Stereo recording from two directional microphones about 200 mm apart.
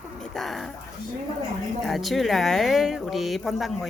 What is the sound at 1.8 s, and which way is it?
Speech, centre (ahead or behind).